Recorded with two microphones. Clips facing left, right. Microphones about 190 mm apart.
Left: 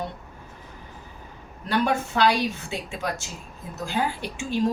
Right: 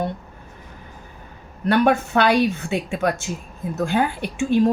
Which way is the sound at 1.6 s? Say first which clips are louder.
Right 7 dB; 60° right (ahead or behind).